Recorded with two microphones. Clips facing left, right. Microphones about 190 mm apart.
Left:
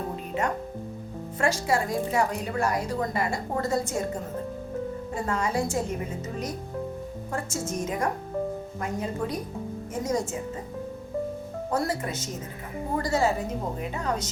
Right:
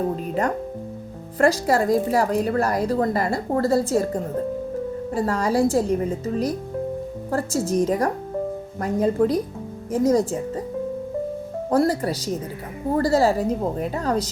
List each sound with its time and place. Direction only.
1.4 s a woman's voice: 35° right (ahead or behind)
11.7 s a woman's voice: 35° right (ahead or behind)